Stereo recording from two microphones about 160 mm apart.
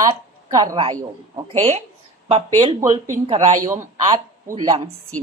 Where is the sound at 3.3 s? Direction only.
40° right (ahead or behind).